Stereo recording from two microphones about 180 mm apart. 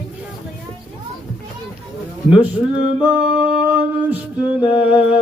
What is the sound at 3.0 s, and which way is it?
Music, 5° right (ahead or behind).